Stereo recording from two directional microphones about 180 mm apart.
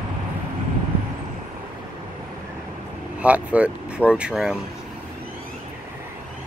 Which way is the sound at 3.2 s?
5° right (ahead or behind).